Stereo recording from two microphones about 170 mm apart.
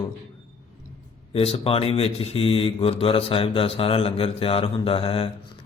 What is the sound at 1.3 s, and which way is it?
Speech, 35° left (ahead or behind).